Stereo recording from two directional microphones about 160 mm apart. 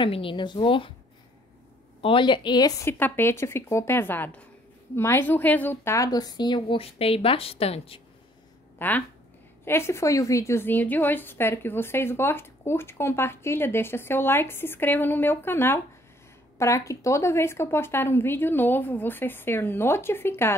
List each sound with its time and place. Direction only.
0.0 s a woman's voice: 35° left (ahead or behind)
2.0 s a woman's voice: 35° left (ahead or behind)
8.7 s a woman's voice: 10° left (ahead or behind)